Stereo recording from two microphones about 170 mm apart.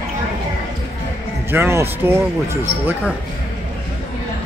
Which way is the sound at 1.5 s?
15° right (ahead or behind).